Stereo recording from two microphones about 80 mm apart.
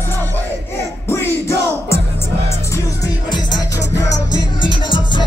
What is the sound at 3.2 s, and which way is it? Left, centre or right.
Music, left.